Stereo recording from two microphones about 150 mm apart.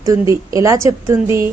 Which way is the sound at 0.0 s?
20° right (ahead or behind).